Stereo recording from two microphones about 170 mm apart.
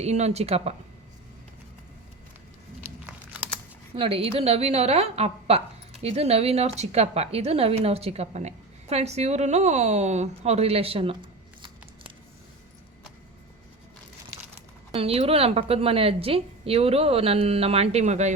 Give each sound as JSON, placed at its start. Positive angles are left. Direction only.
{"t": 0.0, "sound": "a woman's voice", "side_deg": -40}
{"t": 2.8, "sound": "crumpling", "side_deg": -10}
{"t": 3.9, "sound": "a woman's voice", "side_deg": -30}
{"t": 14.9, "sound": "a woman's voice", "side_deg": -35}